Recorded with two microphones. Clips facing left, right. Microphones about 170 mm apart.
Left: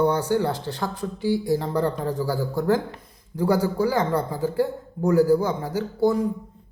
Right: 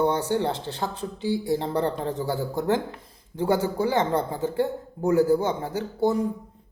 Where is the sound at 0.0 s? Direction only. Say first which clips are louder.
Left 2 dB; 20° right (ahead or behind).